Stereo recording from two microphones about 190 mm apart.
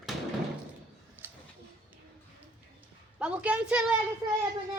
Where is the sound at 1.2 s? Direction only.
10° right (ahead or behind).